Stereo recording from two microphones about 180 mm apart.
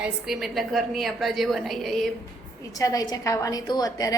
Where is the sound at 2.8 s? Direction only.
20° left (ahead or behind).